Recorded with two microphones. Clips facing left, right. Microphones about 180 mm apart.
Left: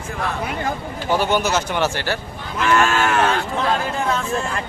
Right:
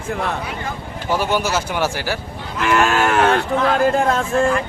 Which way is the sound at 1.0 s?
5° right (ahead or behind).